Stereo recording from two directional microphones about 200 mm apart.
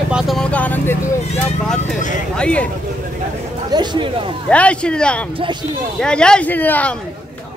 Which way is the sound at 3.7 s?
20° right (ahead or behind).